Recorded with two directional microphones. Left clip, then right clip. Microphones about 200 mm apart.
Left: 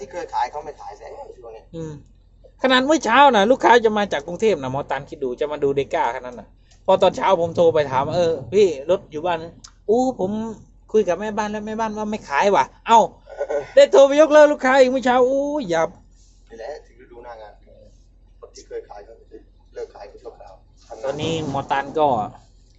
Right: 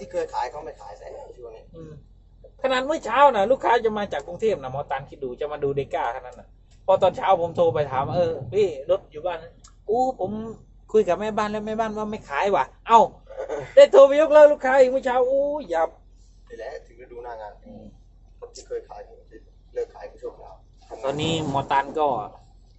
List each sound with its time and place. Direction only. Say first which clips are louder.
2.6 s speech: left 6 dB; 35° left (ahead or behind)
10.9 s a man's voice: left 1 dB; 5° left (ahead or behind); by 15.9 s 30° left (ahead or behind)
21.0 s a man's voice: left 1 dB; centre (ahead or behind); by 22.3 s 15° left (ahead or behind)